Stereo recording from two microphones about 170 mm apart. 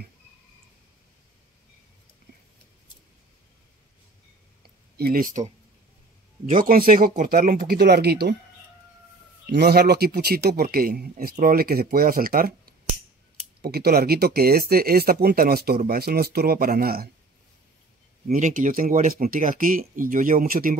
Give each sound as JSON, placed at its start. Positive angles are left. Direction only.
{"t": 4.6, "sound": "a sound", "side_deg": -70}
{"t": 6.6, "sound": "speech", "side_deg": -55}
{"t": 9.5, "sound": "speech", "side_deg": -70}
{"t": 18.2, "sound": "speech", "side_deg": -50}